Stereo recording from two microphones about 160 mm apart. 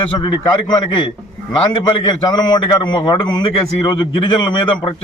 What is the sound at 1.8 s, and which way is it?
A man's voice, 25° left (ahead or behind).